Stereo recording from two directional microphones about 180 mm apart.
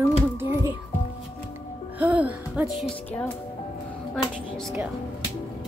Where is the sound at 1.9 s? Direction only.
10° right (ahead or behind).